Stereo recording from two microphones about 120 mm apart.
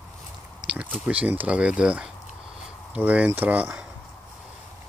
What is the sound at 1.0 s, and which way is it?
Speech, 10° right (ahead or behind).